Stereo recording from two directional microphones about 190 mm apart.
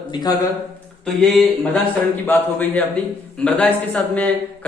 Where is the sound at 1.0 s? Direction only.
5° left (ahead or behind).